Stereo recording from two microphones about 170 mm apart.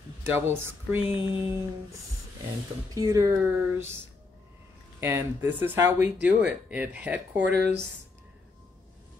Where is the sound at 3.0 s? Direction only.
20° right (ahead or behind).